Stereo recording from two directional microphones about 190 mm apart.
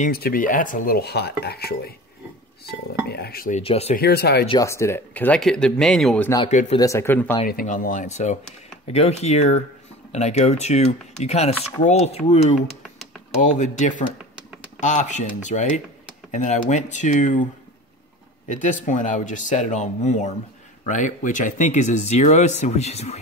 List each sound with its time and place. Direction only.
0.0 s speech: 50° left (ahead or behind)
2.7 s dishes: 55° left (ahead or behind)
3.5 s speech: 35° left (ahead or behind)
3.9 s dishes: 60° left (ahead or behind)
4.5 s speech: 15° left (ahead or behind)
6.8 s speech: 15° left (ahead or behind)
7.4 s speech: 45° left (ahead or behind)
18.5 s speech: 40° left (ahead or behind)